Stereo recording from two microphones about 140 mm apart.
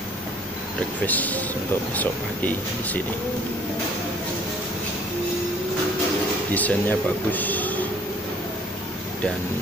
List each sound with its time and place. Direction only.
1.0 s speech: 10° left (ahead or behind)
6.5 s speech: 10° left (ahead or behind)